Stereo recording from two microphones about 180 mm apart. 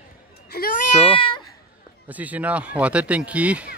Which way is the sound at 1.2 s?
25° left (ahead or behind).